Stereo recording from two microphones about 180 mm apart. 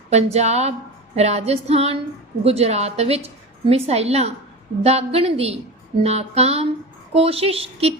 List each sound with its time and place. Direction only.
0.1 s a woman's voice: 40° right (ahead or behind)